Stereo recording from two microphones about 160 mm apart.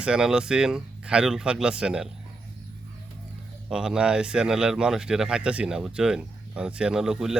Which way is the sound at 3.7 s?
5° right (ahead or behind).